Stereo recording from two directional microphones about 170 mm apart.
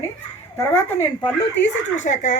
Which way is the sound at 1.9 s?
45° left (ahead or behind).